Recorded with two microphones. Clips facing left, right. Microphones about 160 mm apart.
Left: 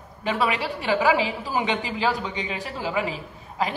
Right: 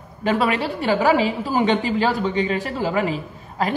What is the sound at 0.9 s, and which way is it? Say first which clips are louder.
Speech: right 3 dB; 40° right (ahead or behind).